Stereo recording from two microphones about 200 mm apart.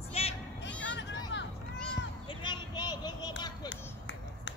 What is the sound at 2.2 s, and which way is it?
Vehicle, 20° left (ahead or behind).